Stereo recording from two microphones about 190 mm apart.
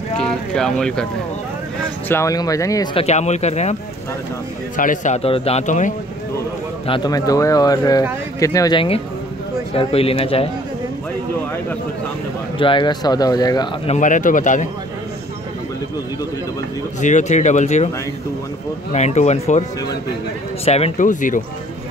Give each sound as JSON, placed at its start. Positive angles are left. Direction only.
{"t": 0.2, "sound": "speech", "side_deg": 5}
{"t": 2.0, "sound": "speech", "side_deg": 15}
{"t": 4.7, "sound": "a man's voice", "side_deg": 40}
{"t": 6.9, "sound": "speech", "side_deg": 20}
{"t": 12.5, "sound": "speech", "side_deg": 25}
{"t": 13.8, "sound": "a man's voice", "side_deg": 40}
{"t": 17.0, "sound": "a man's voice", "side_deg": 40}
{"t": 18.9, "sound": "a man's voice", "side_deg": 35}
{"t": 20.6, "sound": "a man's voice", "side_deg": 35}